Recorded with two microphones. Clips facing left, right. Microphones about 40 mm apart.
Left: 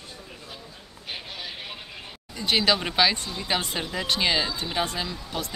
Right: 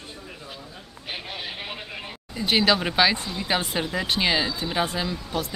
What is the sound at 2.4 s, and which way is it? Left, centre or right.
Speech, centre.